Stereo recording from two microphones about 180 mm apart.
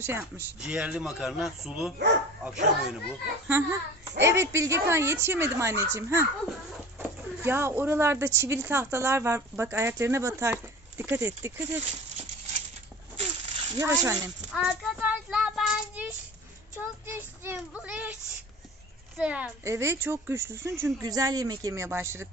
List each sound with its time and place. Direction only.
0.0 s speech: 10° right (ahead or behind)
13.7 s speech: 20° right (ahead or behind)
14.5 s child singing: centre (ahead or behind)
19.1 s speech: 5° right (ahead or behind)